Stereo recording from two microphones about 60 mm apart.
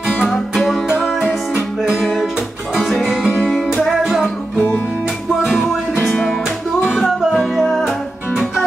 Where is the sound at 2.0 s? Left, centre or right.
Centre.